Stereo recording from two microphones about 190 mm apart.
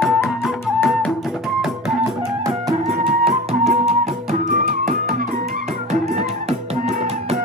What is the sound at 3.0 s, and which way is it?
Music, 30° right (ahead or behind).